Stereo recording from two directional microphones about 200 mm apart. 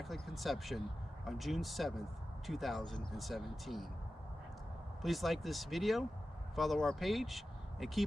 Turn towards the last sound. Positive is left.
turn(degrees=0)  # may be behind; listen again after turning